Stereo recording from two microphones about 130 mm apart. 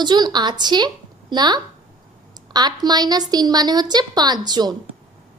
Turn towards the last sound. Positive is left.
turn(degrees=-30)  # may be behind; listen again after turning